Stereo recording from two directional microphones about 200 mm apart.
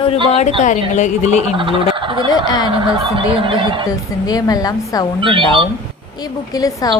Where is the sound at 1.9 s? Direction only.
25° right (ahead or behind).